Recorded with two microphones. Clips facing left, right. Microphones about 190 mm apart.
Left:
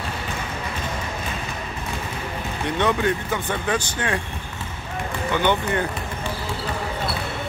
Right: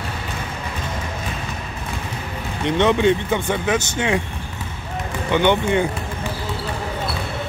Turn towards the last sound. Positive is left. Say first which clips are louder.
# right 4 dB
turn(degrees=-15)  # may be behind; listen again after turning